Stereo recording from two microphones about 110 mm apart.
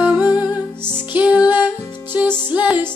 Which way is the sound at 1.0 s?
10° right (ahead or behind).